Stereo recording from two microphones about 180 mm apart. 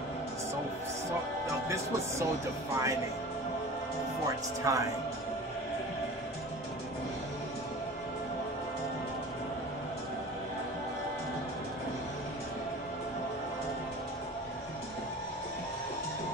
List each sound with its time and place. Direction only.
2.7 s a man's voice: 15° right (ahead or behind)
4.7 s a man's voice: 15° right (ahead or behind)